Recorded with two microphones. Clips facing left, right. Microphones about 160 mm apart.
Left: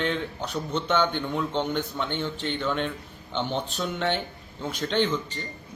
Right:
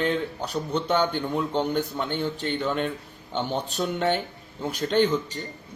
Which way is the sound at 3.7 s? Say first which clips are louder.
Right 3 dB; 45° right (ahead or behind).